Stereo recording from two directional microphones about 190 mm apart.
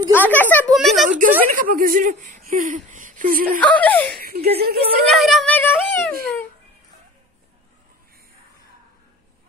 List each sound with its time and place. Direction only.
0.1 s a woman's voice: 10° left (ahead or behind)
0.7 s a sound: centre (ahead or behind)
1.0 s a woman's voice: 40° right (ahead or behind)
3.6 s speech: 10° left (ahead or behind)
4.2 s speech: 50° right (ahead or behind)
5.0 s speech: centre (ahead or behind)